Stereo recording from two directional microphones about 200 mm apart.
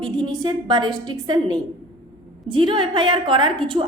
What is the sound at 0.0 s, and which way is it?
A woman's voice, 20° right (ahead or behind).